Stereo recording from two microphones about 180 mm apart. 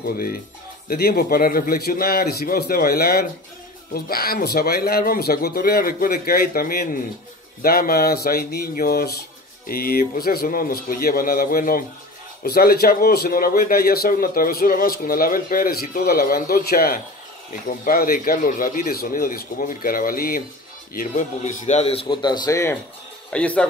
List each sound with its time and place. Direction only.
0.0 s a man's voice: 55° left (ahead or behind); by 23.6 s 5° left (ahead or behind)